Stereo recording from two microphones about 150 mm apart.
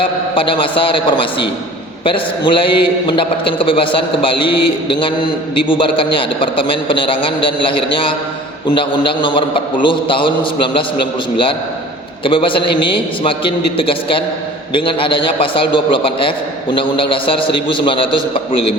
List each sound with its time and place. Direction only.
0.0 s a man's voice: 35° left (ahead or behind)